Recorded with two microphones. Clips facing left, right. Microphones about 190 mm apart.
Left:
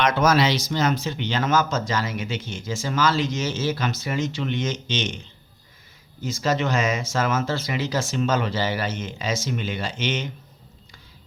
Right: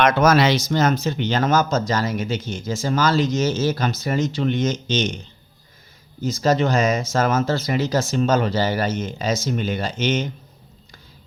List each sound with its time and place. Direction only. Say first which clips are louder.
0.0 s speech: right 4 dB; 55° right (ahead or behind)
6.2 s speech: right 5 dB; 40° right (ahead or behind)